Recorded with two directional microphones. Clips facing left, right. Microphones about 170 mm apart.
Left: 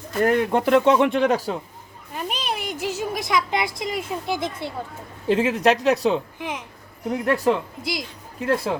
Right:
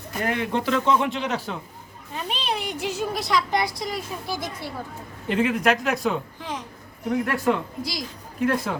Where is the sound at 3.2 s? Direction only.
20° left (ahead or behind).